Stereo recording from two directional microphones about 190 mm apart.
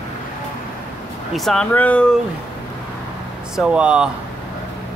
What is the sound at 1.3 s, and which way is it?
Speech, centre (ahead or behind).